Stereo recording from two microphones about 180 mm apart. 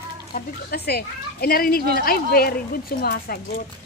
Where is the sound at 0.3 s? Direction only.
55° left (ahead or behind).